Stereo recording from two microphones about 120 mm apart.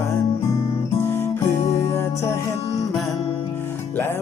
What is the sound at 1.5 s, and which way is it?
Music, 60° left (ahead or behind).